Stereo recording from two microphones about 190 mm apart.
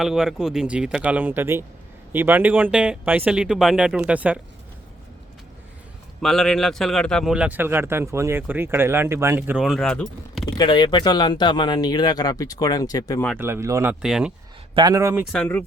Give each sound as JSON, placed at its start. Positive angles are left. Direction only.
{"t": 0.0, "sound": "a man's voice", "side_deg": -5}
{"t": 6.2, "sound": "a man's voice", "side_deg": 0}
{"t": 10.4, "sound": "speech", "side_deg": 25}
{"t": 13.4, "sound": "a man's voice", "side_deg": -15}
{"t": 14.0, "sound": "speech", "side_deg": -5}
{"t": 14.8, "sound": "a man's voice", "side_deg": -20}
{"t": 15.3, "sound": "speech", "side_deg": 5}